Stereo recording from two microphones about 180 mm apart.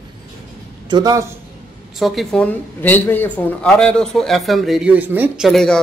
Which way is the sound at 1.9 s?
Centre (ahead or behind).